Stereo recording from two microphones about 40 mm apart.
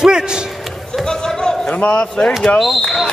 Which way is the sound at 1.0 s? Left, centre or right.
Centre.